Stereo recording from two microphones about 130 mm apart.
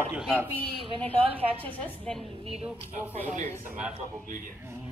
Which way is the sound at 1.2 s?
45° right (ahead or behind).